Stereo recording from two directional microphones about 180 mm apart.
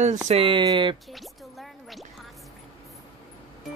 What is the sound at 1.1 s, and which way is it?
Music, centre (ahead or behind).